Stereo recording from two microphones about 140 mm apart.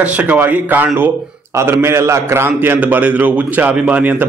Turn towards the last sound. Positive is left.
turn(degrees=-10)  # may be behind; listen again after turning